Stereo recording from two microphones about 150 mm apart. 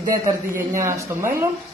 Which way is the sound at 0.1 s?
20° right (ahead or behind).